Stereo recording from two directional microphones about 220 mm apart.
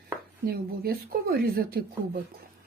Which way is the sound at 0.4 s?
45° right (ahead or behind).